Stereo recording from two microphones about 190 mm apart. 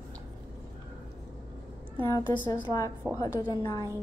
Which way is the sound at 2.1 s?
15° left (ahead or behind).